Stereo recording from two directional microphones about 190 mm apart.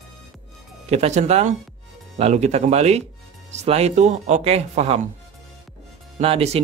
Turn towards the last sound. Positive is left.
turn(degrees=-30)  # may be behind; listen again after turning